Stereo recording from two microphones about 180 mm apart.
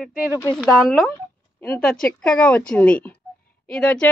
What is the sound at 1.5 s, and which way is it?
A woman's voice, 10° left (ahead or behind).